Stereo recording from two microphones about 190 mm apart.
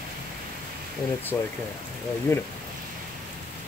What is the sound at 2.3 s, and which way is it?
Speech, 15° left (ahead or behind).